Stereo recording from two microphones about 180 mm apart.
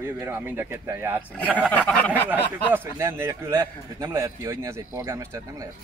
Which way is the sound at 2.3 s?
15° right (ahead or behind).